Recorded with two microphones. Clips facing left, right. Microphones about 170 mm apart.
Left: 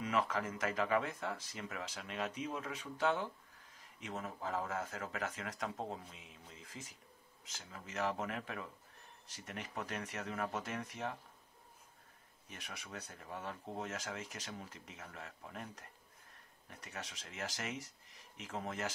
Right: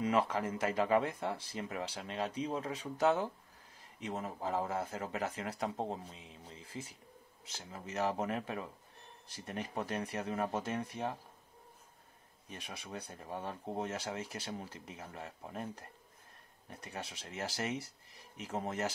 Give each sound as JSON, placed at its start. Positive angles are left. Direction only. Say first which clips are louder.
{"t": 0.0, "sound": "speech", "louder": "right 4 dB", "side_deg": -35}
{"t": 12.4, "sound": "speech", "louder": "right 4 dB", "side_deg": -30}